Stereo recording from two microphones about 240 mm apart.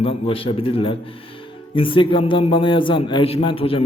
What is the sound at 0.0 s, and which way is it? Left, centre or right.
Speech, left.